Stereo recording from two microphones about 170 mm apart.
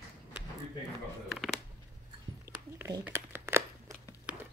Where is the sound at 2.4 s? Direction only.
15° right (ahead or behind).